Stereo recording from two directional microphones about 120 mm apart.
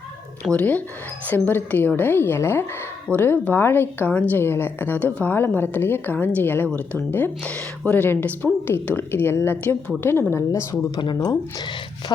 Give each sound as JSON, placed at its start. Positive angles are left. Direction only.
{"t": 0.4, "sound": "a woman's voice", "side_deg": 10}